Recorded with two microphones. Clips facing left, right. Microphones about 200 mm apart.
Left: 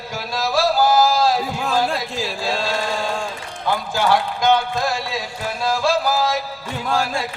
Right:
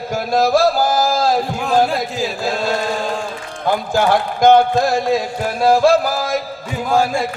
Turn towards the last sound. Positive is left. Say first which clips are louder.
# right 5 dB
turn(degrees=-10)  # may be behind; listen again after turning